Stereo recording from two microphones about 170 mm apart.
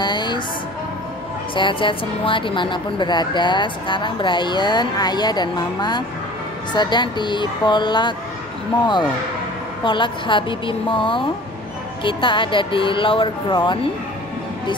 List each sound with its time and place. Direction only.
0.0 s music: 25° left (ahead or behind)
1.5 s speech: 30° left (ahead or behind)
9.8 s speech: 30° left (ahead or behind)